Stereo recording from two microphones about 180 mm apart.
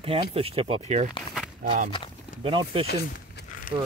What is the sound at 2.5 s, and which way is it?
Speech, 30° right (ahead or behind).